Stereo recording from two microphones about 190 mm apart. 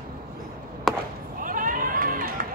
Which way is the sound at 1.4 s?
45° right (ahead or behind).